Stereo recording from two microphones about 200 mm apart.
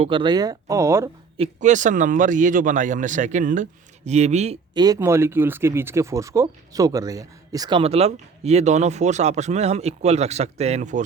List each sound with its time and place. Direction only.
0.0 s speech: 25° right (ahead or behind)
1.4 s speech: 40° right (ahead or behind)
4.7 s speech: 20° right (ahead or behind); by 11.0 s 35° right (ahead or behind)